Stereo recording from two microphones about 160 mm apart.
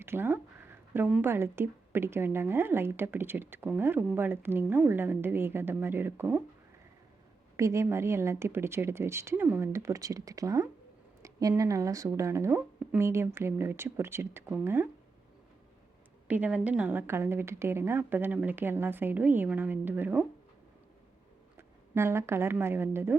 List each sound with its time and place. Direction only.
0.0 s a woman's voice: 15° right (ahead or behind)
7.5 s a woman's voice: 20° right (ahead or behind)
16.2 s a woman's voice: 10° right (ahead or behind)
21.9 s a woman's voice: 15° right (ahead or behind)